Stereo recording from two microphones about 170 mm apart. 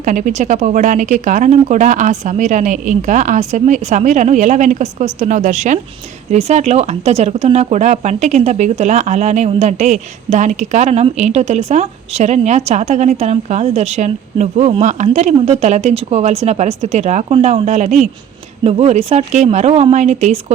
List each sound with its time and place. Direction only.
0.0 s speech: 50° right (ahead or behind)